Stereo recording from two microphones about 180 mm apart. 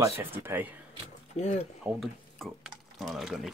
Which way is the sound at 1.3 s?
40° left (ahead or behind).